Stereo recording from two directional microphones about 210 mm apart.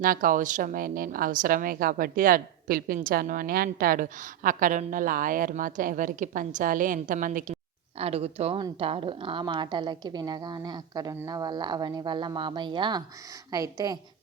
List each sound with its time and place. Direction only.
0.0 s a woman's voice: 40° right (ahead or behind)
7.9 s a woman's voice: 30° right (ahead or behind)